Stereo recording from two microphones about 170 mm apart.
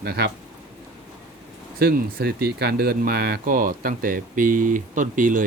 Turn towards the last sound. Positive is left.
turn(degrees=-50)  # may be behind; listen again after turning